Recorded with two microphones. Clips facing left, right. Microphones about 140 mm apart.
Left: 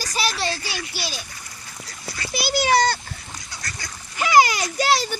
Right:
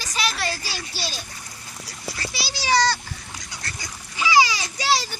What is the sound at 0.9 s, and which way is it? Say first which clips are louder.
Speech: left 1 dB; 10° left (ahead or behind).